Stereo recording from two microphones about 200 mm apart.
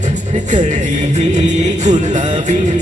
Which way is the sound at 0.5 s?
35° right (ahead or behind).